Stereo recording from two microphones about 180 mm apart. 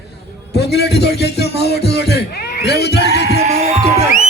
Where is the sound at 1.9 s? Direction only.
65° left (ahead or behind).